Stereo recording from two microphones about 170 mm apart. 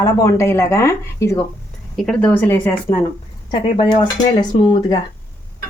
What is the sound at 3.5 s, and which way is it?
Speech, 25° left (ahead or behind).